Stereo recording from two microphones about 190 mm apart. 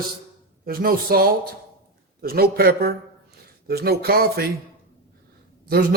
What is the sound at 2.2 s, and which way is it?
A man's voice, 50° right (ahead or behind).